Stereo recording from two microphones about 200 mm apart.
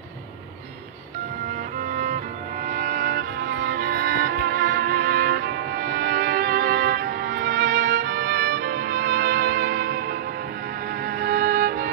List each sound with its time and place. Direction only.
2.0 s music: 45° right (ahead or behind)